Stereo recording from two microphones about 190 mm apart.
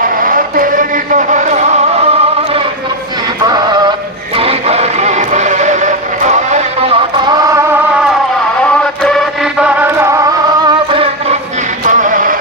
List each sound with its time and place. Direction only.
0.2 s a sound: 45° right (ahead or behind)
4.4 s music: 30° right (ahead or behind)
7.3 s music: 15° right (ahead or behind)
8.8 s chant: 5° left (ahead or behind)
10.9 s music: 30° right (ahead or behind)
11.9 s music: 40° right (ahead or behind)